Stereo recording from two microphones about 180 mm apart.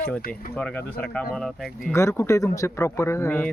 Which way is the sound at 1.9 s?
15° left (ahead or behind).